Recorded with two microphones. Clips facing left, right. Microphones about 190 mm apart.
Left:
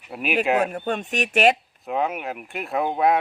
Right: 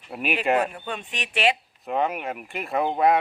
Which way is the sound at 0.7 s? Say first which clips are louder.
Left 7 dB; 45° left (ahead or behind).